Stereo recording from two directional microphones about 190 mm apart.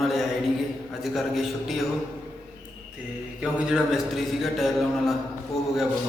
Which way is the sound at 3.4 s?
5° right (ahead or behind).